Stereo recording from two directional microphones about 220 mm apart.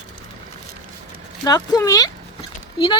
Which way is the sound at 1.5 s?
15° left (ahead or behind).